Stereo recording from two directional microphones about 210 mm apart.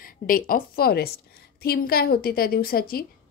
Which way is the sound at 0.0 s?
40° left (ahead or behind).